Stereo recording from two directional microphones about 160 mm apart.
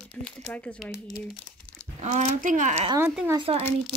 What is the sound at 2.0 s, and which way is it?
Speech, 50° right (ahead or behind).